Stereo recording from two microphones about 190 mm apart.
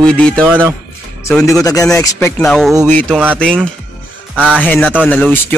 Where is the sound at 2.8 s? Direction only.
10° left (ahead or behind).